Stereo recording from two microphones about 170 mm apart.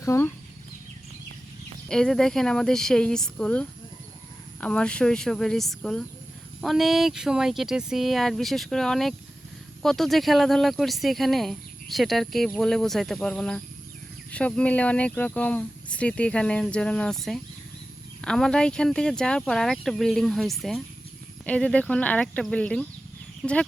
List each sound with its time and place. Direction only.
0.0 s speech: 15° left (ahead or behind)
1.9 s speech: 5° left (ahead or behind)